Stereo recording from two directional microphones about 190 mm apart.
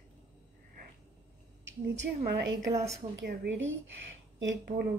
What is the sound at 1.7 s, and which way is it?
A woman's voice, 70° right (ahead or behind).